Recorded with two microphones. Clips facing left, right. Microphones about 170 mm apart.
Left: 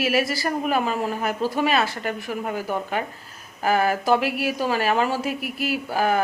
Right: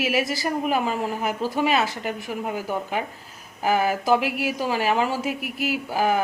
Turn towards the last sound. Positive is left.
turn(degrees=-15)  # may be behind; listen again after turning